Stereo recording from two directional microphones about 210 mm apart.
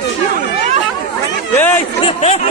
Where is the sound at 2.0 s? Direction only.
30° left (ahead or behind).